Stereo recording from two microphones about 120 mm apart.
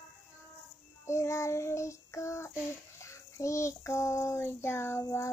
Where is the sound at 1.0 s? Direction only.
25° left (ahead or behind).